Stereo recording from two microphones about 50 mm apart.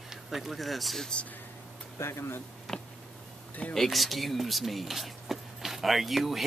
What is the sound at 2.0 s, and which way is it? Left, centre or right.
Speech, left.